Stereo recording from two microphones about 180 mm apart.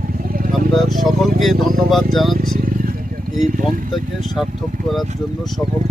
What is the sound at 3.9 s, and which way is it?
Speech, centre (ahead or behind).